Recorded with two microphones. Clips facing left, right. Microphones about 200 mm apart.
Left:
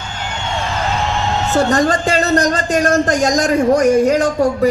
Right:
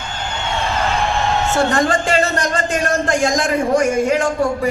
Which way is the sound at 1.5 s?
40° left (ahead or behind).